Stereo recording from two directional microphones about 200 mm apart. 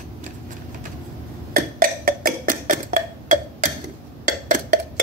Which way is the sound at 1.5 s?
45° right (ahead or behind).